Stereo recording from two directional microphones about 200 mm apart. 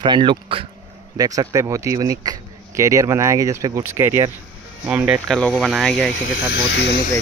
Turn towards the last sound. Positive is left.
turn(degrees=60)  # may be behind; listen again after turning